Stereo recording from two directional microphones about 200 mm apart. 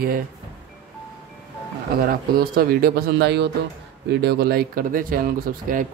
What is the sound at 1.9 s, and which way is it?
Speech, 45° right (ahead or behind).